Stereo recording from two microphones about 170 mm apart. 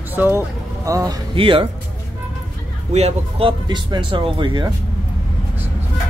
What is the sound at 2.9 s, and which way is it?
Speech, 40° right (ahead or behind).